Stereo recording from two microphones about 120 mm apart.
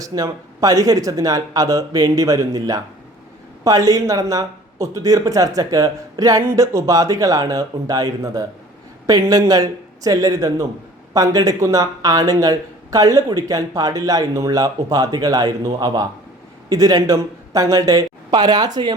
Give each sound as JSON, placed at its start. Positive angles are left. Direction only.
{"t": 0.0, "sound": "speech", "side_deg": -30}